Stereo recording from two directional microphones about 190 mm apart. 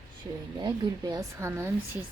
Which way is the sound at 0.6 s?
20° right (ahead or behind).